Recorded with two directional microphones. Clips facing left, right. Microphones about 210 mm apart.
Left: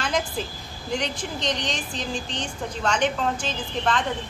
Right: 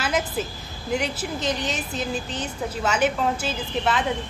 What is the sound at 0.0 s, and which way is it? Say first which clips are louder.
A woman's voice: right 1 dB; 5° right (ahead or behind).